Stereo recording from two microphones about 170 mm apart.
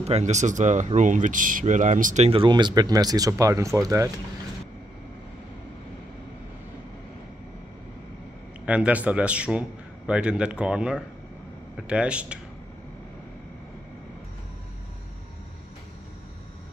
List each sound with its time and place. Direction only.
0.0 s speech: 40° right (ahead or behind)
2.2 s speech: 30° right (ahead or behind)
8.6 s a man's voice: 5° right (ahead or behind)